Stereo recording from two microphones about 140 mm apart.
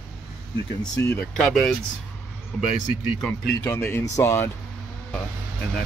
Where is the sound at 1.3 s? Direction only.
Centre (ahead or behind).